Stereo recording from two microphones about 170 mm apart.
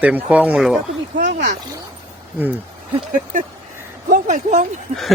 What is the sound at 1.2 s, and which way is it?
Speech, 90° right.